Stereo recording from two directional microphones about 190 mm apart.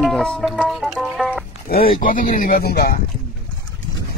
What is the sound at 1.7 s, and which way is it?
A man's voice, 50° left (ahead or behind).